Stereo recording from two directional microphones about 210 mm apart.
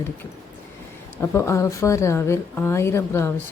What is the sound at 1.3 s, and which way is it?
Speech, 15° left (ahead or behind).